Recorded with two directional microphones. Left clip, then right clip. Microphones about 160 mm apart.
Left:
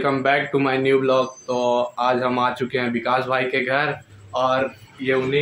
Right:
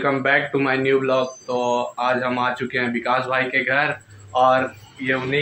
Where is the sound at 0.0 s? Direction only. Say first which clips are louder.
Right 1 dB; 20° left (ahead or behind).